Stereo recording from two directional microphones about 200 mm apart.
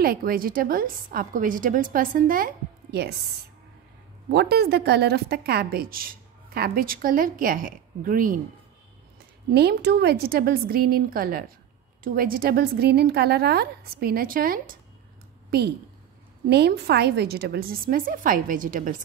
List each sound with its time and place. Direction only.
0.0 s a woman's voice: 45° right (ahead or behind)
4.3 s a woman's voice: 55° right (ahead or behind)
9.5 s a woman's voice: 55° right (ahead or behind)